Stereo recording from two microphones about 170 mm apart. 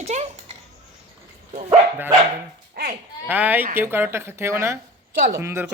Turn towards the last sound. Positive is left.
turn(degrees=-15)  # may be behind; listen again after turning